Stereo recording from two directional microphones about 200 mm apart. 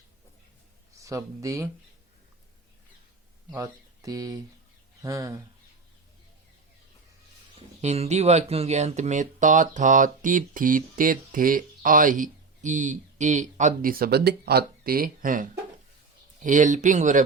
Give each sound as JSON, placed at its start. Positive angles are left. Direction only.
{"t": 0.9, "sound": "speech", "side_deg": -15}
{"t": 3.5, "sound": "speech", "side_deg": -15}
{"t": 7.8, "sound": "speech", "side_deg": -35}